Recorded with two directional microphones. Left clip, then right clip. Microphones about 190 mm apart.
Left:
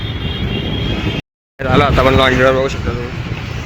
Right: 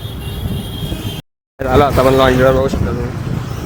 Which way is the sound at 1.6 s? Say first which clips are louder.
Right 1 dB; 25° right (ahead or behind).